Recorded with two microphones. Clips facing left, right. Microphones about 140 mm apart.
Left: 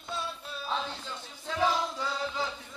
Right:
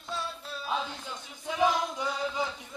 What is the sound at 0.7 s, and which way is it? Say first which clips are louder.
Music: right 1 dB; 15° right (ahead or behind).